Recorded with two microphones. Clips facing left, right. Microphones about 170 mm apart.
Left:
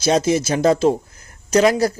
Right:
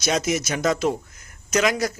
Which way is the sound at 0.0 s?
30° left (ahead or behind).